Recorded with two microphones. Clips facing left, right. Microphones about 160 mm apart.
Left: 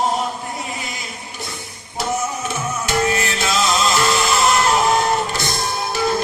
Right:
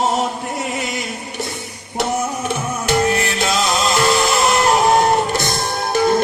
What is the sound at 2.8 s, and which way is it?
Music, 55° right (ahead or behind).